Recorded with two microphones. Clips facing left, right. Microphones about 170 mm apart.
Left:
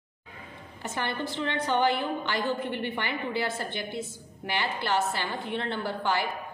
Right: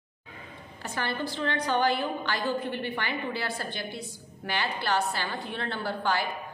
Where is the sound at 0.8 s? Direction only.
20° left (ahead or behind).